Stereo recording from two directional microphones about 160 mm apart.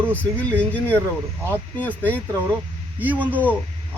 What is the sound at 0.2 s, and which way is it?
Speech, 10° left (ahead or behind).